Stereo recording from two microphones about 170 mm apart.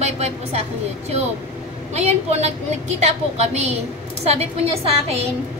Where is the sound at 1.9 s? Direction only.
40° right (ahead or behind).